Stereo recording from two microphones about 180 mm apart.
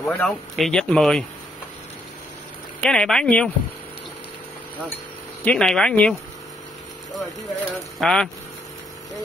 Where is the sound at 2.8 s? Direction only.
5° left (ahead or behind).